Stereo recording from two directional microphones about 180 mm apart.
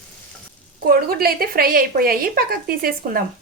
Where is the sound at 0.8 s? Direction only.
55° right (ahead or behind).